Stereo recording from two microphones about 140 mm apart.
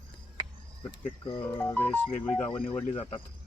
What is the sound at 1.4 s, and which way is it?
Speech, 20° left (ahead or behind).